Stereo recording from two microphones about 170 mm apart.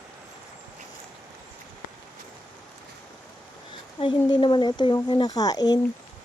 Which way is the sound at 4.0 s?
30° left (ahead or behind).